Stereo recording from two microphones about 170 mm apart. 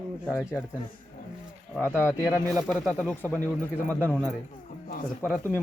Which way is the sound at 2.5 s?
Centre (ahead or behind).